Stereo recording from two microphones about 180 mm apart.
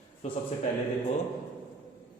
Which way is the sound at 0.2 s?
40° left (ahead or behind).